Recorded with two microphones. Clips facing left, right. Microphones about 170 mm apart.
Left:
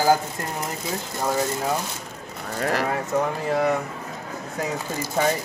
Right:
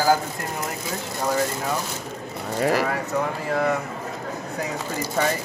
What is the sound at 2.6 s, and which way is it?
Speech, 5° right (ahead or behind).